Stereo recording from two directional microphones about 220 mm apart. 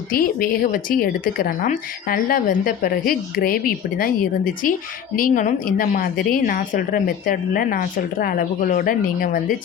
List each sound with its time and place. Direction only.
0.1 s a woman's voice: 40° left (ahead or behind)